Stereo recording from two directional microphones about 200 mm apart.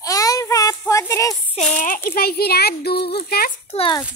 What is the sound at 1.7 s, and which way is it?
A child's voice, 40° left (ahead or behind).